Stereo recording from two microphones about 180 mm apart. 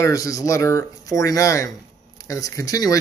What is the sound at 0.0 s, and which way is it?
Speech, 20° left (ahead or behind).